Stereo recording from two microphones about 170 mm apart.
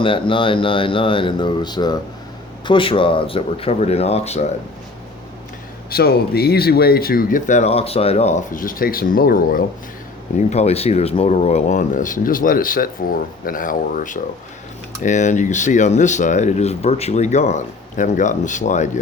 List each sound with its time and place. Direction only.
0.0 s speech: 30° left (ahead or behind)
5.9 s speech: 65° left (ahead or behind)
10.3 s speech: 40° left (ahead or behind)